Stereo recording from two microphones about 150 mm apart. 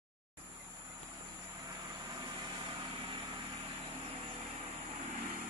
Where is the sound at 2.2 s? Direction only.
30° right (ahead or behind).